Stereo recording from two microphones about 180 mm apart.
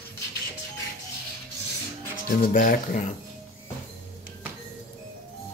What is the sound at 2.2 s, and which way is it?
Speech, 50° left (ahead or behind).